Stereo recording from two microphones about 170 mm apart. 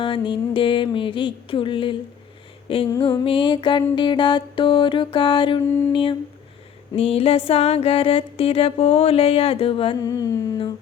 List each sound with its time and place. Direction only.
0.0 s mantra: 30° left (ahead or behind)
2.6 s a sound: 30° left (ahead or behind)
3.2 s mantra: 30° left (ahead or behind)
6.9 s music: 35° left (ahead or behind)
10.0 s humming: 20° left (ahead or behind)